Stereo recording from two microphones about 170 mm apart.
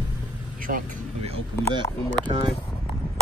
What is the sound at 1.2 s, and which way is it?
Speech, 35° right (ahead or behind).